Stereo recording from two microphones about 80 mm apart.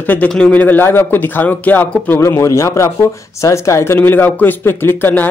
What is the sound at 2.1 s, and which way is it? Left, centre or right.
Speech, left.